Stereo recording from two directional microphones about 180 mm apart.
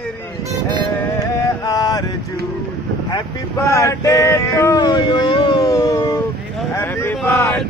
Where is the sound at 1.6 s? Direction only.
20° left (ahead or behind).